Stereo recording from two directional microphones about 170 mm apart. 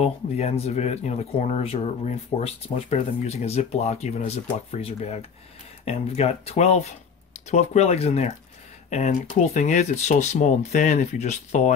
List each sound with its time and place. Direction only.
0.0 s speech: 40° left (ahead or behind)